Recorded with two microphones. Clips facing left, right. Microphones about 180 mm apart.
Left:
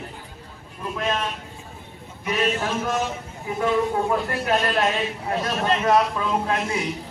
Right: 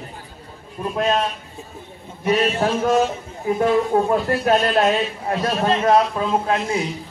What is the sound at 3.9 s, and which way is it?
Speech, 45° right (ahead or behind).